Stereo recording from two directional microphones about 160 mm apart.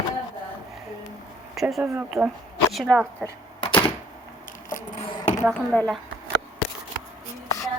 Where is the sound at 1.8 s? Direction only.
15° right (ahead or behind).